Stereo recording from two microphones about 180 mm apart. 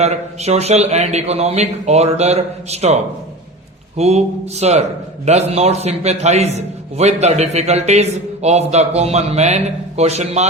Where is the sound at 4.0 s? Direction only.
35° right (ahead or behind).